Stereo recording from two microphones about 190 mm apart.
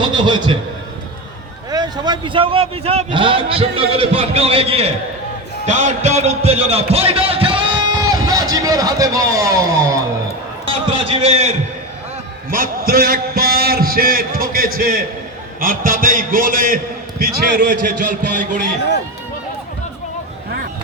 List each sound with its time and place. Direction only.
0.0 s a man's voice: 25° right (ahead or behind)
1.7 s a man's voice: 20° right (ahead or behind)
10.7 s a man's voice: 30° right (ahead or behind)
12.5 s a man's voice: 50° right (ahead or behind)